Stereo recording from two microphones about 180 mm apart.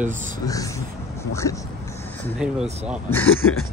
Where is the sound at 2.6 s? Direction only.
35° right (ahead or behind).